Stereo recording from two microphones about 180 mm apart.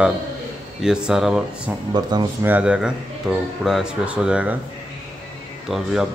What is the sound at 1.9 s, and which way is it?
Speech, 25° right (ahead or behind).